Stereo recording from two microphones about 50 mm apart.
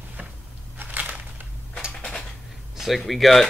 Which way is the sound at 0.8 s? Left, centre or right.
Right.